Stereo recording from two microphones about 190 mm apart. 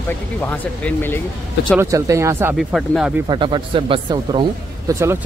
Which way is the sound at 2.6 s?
Centre (ahead or behind).